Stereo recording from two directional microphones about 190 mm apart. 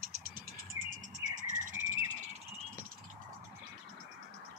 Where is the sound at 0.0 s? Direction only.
45° right (ahead or behind).